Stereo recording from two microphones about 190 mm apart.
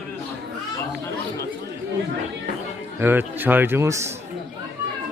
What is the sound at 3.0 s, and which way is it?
A man's voice, 10° right (ahead or behind).